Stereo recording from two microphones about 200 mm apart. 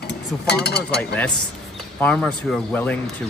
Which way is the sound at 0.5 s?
55° left (ahead or behind).